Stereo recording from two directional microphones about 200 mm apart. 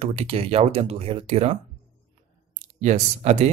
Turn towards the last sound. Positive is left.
turn(degrees=-35)  # may be behind; listen again after turning